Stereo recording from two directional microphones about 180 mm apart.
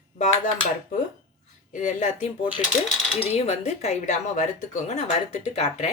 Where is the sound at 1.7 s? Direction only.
40° left (ahead or behind).